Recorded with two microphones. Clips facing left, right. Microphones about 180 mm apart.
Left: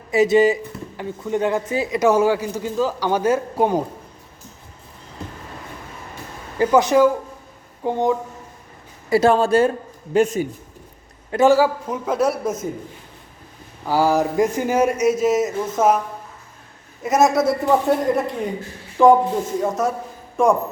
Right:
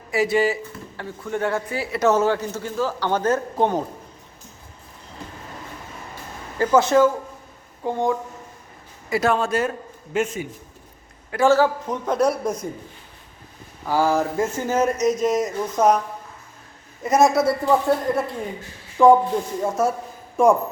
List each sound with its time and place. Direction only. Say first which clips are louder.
0.1 s speech: left 5 dB; 20° left (ahead or behind)
6.6 s speech: left 2 dB; 15° left (ahead or behind)
9.0 s a man's voice: left 5 dB; 30° left (ahead or behind)
11.3 s a man's voice: left 2 dB; 20° left (ahead or behind)
13.8 s speech: left 2 dB; 15° left (ahead or behind)
17.0 s a man's voice: even; centre (ahead or behind)
17.4 s speech: left 1 dB; 20° left (ahead or behind)
19.0 s a man's voice: left 1 dB; 5° left (ahead or behind)